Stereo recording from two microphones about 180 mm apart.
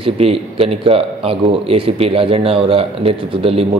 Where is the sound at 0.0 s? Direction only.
30° right (ahead or behind).